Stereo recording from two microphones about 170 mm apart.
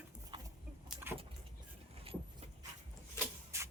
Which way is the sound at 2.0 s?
35° right (ahead or behind).